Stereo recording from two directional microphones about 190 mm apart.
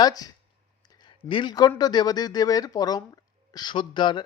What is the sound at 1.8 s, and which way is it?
Speech, 20° left (ahead or behind).